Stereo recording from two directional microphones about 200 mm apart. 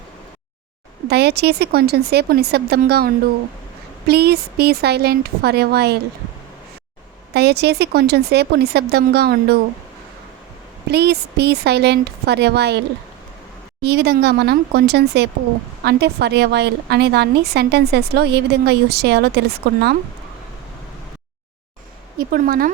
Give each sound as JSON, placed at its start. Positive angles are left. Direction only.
{"t": 1.0, "sound": "speech", "side_deg": -55}
{"t": 7.3, "sound": "a woman's voice", "side_deg": -55}
{"t": 10.8, "sound": "a woman's voice", "side_deg": -55}
{"t": 13.8, "sound": "a woman's voice", "side_deg": -55}
{"t": 22.2, "sound": "speech", "side_deg": -45}